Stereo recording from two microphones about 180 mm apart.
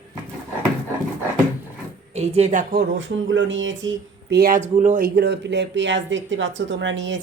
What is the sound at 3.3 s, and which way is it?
Speech, 90° right.